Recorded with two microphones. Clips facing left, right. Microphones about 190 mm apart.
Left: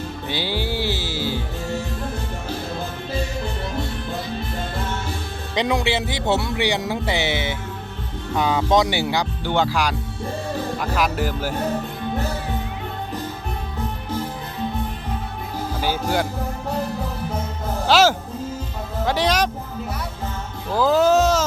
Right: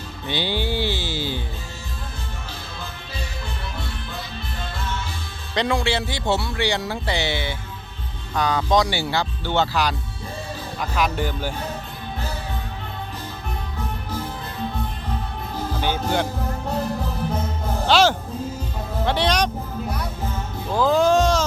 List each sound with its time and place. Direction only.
0.3 s music: 5° left (ahead or behind)
4.4 s music: 45° left (ahead or behind)
5.5 s speech: 15° left (ahead or behind)
15.7 s music: 5° left (ahead or behind)
17.8 s music: 5° left (ahead or behind)
19.0 s speech: 5° left (ahead or behind)
20.7 s music: 5° left (ahead or behind)